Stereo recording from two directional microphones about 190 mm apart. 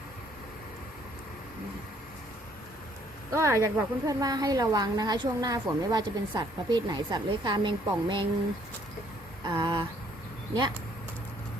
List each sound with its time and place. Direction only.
3.3 s a woman's voice: 15° right (ahead or behind)
9.4 s a woman's voice: 25° right (ahead or behind)